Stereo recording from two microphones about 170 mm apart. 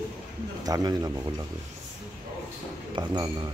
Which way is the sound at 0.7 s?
20° right (ahead or behind).